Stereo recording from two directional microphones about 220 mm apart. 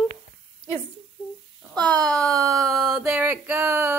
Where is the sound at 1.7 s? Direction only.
5° left (ahead or behind).